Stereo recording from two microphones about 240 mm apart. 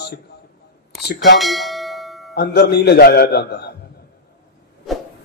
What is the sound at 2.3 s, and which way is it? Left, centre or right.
A man's voice, left.